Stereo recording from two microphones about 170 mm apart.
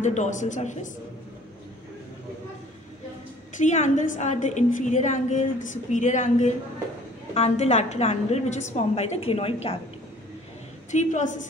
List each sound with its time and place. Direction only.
0.0 s a woman's voice: 45° left (ahead or behind)
3.6 s a woman's voice: 45° left (ahead or behind)
10.9 s a woman's voice: 45° left (ahead or behind)